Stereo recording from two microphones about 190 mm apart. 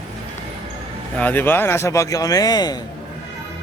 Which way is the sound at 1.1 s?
10° left (ahead or behind).